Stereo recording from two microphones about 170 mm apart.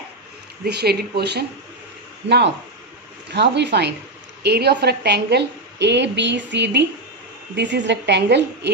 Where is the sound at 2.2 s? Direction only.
90° right.